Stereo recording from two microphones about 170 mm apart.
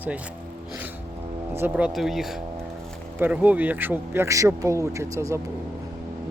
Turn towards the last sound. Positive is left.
turn(degrees=-20)  # may be behind; listen again after turning